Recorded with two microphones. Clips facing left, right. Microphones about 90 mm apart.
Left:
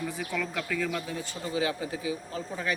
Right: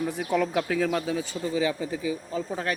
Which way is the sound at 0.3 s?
55° right (ahead or behind).